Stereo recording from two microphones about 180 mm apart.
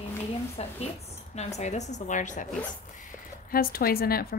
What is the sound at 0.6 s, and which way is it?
A woman's voice, 35° left (ahead or behind).